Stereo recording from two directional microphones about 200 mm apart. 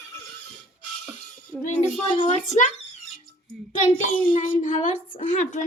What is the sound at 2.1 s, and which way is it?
Speech, 35° left (ahead or behind).